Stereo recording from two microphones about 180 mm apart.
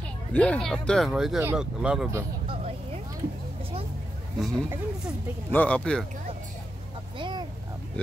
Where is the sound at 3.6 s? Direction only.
30° right (ahead or behind).